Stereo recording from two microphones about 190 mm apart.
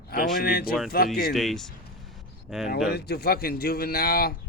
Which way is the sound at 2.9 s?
55° left (ahead or behind).